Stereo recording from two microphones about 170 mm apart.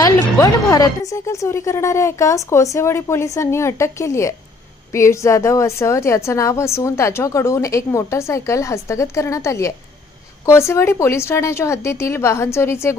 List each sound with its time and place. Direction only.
0.3 s a woman's voice: 20° left (ahead or behind)